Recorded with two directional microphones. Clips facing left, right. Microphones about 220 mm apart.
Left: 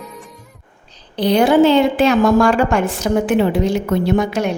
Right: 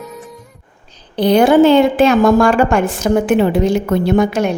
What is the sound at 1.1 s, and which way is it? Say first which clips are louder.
A woman's voice: right 3 dB; 50° right (ahead or behind).